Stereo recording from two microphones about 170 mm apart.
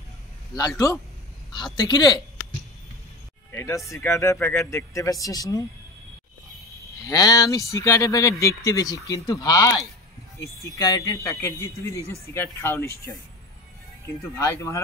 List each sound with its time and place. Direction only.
0.6 s speech: 20° left (ahead or behind)
3.5 s speech: 15° left (ahead or behind)
7.1 s speech: 20° left (ahead or behind)
14.3 s speech: 15° left (ahead or behind)